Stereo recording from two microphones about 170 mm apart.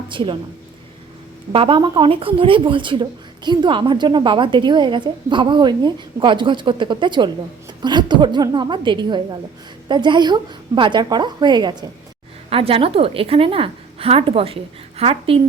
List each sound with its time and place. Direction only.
0.1 s a woman's voice: 30° right (ahead or behind)
1.5 s a woman's voice: 30° right (ahead or behind)